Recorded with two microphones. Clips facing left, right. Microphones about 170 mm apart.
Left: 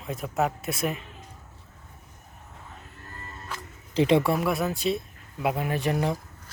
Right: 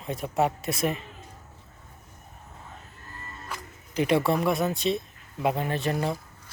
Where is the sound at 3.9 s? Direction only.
25° left (ahead or behind).